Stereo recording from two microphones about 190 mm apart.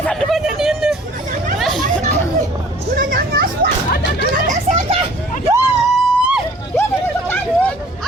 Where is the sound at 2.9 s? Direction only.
50° right (ahead or behind).